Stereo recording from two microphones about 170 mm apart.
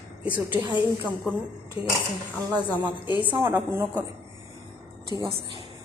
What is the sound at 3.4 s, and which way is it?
Speech, 15° right (ahead or behind).